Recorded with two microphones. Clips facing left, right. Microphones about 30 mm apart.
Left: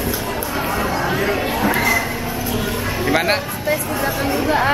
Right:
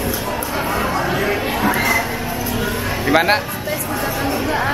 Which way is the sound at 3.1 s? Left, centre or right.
Centre.